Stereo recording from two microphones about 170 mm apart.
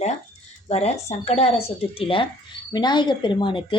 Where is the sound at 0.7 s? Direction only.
40° left (ahead or behind).